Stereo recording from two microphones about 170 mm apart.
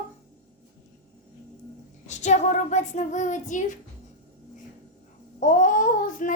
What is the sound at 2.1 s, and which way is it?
Child singing, 45° left (ahead or behind).